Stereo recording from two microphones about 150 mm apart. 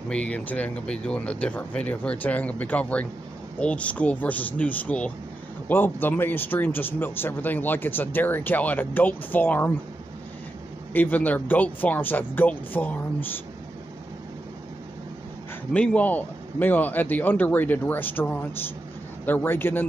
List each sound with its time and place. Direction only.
0.1 s speech: 10° left (ahead or behind)
10.9 s speech: 10° left (ahead or behind)
15.7 s speech: 10° left (ahead or behind)